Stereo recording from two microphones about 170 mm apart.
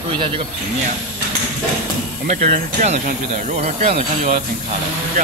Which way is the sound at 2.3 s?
50° right (ahead or behind).